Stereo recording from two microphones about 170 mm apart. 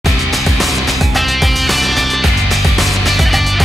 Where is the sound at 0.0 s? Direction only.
Centre (ahead or behind).